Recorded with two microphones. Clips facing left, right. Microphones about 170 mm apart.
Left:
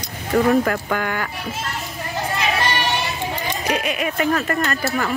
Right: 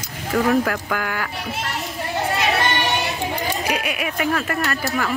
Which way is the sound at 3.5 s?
10° right (ahead or behind).